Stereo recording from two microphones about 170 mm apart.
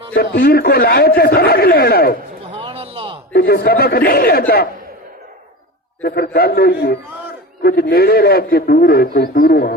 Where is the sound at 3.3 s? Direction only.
65° left (ahead or behind).